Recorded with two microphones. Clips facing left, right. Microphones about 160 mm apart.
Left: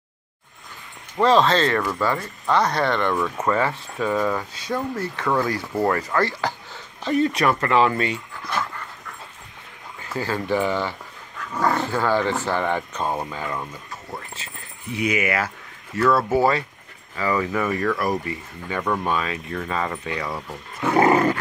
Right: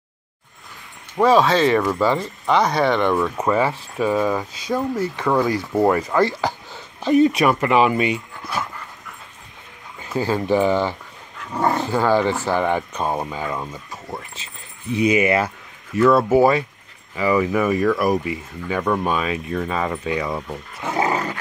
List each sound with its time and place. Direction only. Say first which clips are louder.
1.1 s speech: right 2 dB; 10° right (ahead or behind)
9.9 s speech: right 5 dB; 20° right (ahead or behind)
20.8 s dog: left 5 dB; 60° left (ahead or behind)